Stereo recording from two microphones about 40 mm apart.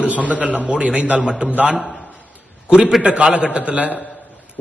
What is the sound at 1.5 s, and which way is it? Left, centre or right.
Speech, right.